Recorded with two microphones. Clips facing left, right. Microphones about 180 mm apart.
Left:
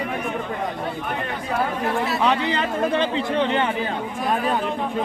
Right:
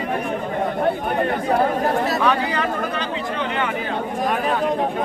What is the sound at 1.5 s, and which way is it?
Chatter, 40° right (ahead or behind).